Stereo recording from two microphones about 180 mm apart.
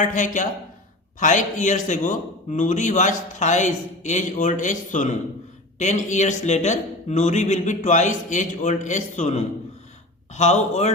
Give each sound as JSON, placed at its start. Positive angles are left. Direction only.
{"t": 0.0, "sound": "a man's voice", "side_deg": 45}